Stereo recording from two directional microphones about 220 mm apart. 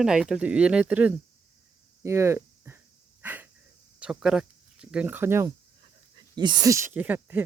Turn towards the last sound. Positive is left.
turn(degrees=-10)  # may be behind; listen again after turning